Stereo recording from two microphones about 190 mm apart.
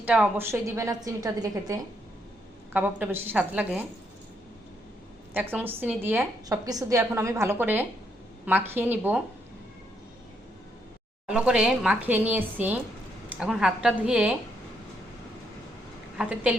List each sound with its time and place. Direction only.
0.0 s a woman's voice: 5° right (ahead or behind)
5.3 s a woman's voice: 10° right (ahead or behind)
11.3 s a woman's voice: 5° right (ahead or behind)
16.1 s a woman's voice: 5° right (ahead or behind)